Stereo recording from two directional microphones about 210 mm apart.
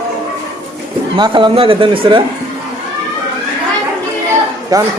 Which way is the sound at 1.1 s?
25° right (ahead or behind).